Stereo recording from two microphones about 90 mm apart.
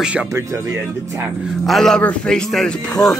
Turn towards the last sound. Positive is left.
turn(degrees=5)  # may be behind; listen again after turning